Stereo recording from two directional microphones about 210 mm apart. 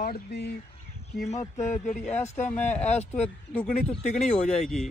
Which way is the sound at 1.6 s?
35° left (ahead or behind).